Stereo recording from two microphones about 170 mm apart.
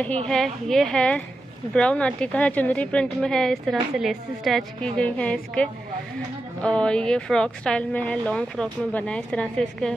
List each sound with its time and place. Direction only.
0.3 s a woman's voice: centre (ahead or behind)